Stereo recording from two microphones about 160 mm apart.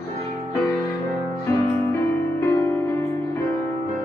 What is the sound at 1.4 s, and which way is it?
Music, 20° left (ahead or behind).